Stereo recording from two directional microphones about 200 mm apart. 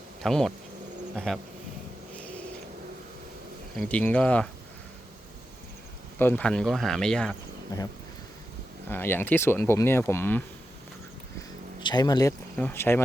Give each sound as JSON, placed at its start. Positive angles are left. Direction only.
{"t": 0.2, "sound": "speech", "side_deg": 0}
{"t": 3.8, "sound": "speech", "side_deg": 5}
{"t": 6.1, "sound": "speech", "side_deg": 10}
{"t": 8.9, "sound": "speech", "side_deg": 10}
{"t": 11.8, "sound": "speech", "side_deg": 20}
{"t": 12.5, "sound": "speech", "side_deg": 10}